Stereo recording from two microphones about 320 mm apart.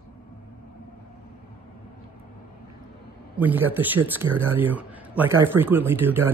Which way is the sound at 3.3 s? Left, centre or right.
Centre.